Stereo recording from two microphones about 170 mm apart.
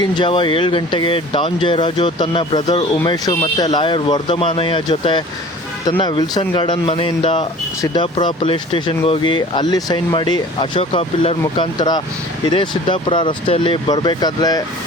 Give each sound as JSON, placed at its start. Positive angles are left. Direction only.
{"t": 0.0, "sound": "speech", "side_deg": 30}